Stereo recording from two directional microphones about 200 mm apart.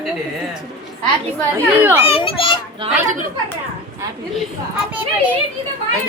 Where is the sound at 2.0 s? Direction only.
30° left (ahead or behind).